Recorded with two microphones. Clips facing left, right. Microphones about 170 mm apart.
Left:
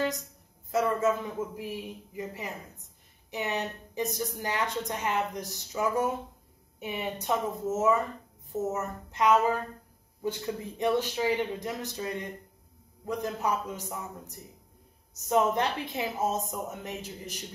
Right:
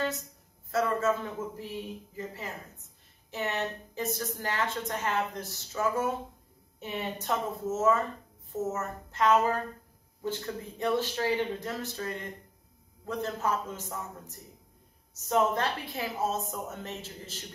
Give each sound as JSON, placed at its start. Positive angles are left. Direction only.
{"t": 0.7, "sound": "a woman's voice", "side_deg": 15}